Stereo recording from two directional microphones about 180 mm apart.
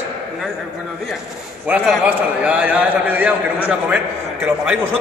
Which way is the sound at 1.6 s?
10° right (ahead or behind).